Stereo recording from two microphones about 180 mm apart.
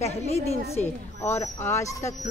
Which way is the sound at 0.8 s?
15° left (ahead or behind).